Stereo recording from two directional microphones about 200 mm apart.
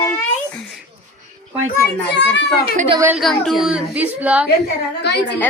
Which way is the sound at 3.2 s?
Centre (ahead or behind).